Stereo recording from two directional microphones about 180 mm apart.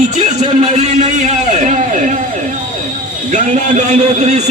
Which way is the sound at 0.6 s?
40° right (ahead or behind).